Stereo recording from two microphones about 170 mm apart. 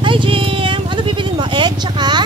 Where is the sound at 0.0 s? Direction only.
30° right (ahead or behind).